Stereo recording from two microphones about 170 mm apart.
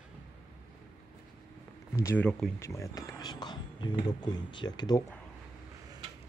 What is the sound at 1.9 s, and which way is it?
Speech, 15° left (ahead or behind).